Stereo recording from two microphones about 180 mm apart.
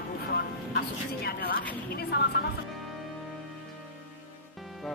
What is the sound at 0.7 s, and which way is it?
A woman's voice, 60° left (ahead or behind).